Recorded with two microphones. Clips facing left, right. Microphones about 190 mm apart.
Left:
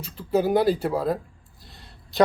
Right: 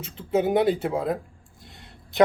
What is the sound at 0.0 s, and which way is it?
Speech, 25° right (ahead or behind).